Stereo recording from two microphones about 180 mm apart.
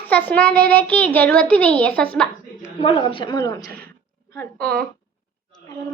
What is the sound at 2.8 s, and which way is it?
A woman's voice, 30° left (ahead or behind).